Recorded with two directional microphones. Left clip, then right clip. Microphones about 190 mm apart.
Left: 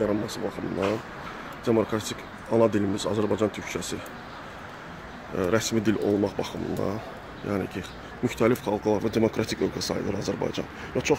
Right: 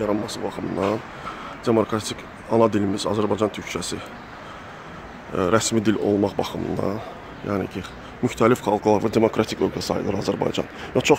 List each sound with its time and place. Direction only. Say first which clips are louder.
0.1 s speech: right 3 dB; 15° right (ahead or behind)
1.6 s speech: right 4 dB; 15° right (ahead or behind)
5.3 s speech: right 5 dB; 20° right (ahead or behind)